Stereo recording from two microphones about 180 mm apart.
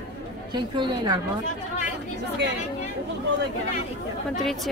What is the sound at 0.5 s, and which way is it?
Speech, 25° right (ahead or behind).